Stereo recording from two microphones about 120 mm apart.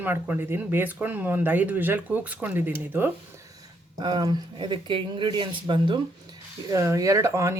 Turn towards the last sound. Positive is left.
turn(degrees=-25)  # may be behind; listen again after turning